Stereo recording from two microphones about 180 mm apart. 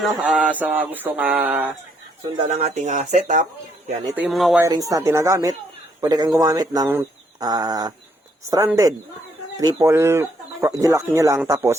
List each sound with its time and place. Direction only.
0.0 s speech: 5° right (ahead or behind)
2.4 s speech: 35° right (ahead or behind)
4.1 s speech: 5° right (ahead or behind)
4.6 s speech: 20° right (ahead or behind)